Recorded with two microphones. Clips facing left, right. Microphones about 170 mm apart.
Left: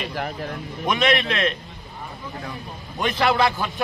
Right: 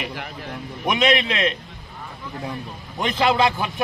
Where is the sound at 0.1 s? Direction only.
40° left (ahead or behind).